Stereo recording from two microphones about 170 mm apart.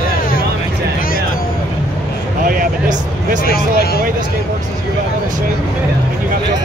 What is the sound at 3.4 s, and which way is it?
Speech, 65° left (ahead or behind).